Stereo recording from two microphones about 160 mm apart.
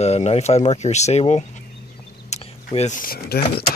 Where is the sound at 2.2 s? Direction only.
45° left (ahead or behind).